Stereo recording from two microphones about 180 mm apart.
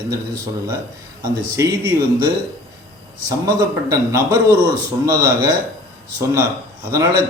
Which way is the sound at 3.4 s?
20° right (ahead or behind).